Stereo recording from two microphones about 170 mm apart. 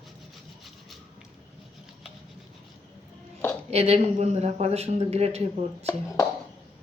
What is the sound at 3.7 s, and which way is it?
Speech, 40° right (ahead or behind).